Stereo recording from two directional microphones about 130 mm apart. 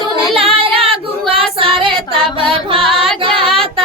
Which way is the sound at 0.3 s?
45° right (ahead or behind).